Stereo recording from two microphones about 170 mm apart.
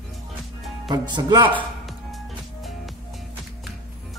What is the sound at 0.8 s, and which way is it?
Speech, 25° right (ahead or behind).